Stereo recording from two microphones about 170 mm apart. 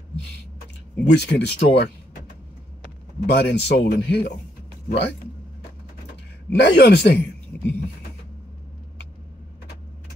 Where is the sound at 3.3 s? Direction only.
80° left.